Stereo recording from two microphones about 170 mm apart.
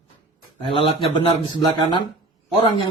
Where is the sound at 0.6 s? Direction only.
30° left (ahead or behind).